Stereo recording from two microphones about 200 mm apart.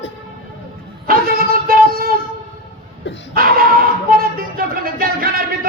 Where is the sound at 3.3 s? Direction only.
45° right (ahead or behind).